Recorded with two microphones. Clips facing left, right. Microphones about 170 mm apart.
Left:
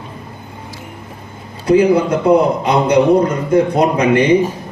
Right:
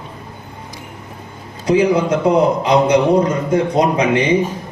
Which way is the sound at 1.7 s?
55° left (ahead or behind).